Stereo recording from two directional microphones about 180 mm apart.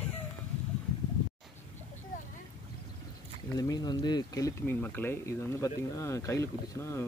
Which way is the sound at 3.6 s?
20° left (ahead or behind).